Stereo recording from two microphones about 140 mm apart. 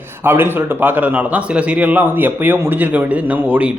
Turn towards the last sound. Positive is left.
turn(degrees=-10)  # may be behind; listen again after turning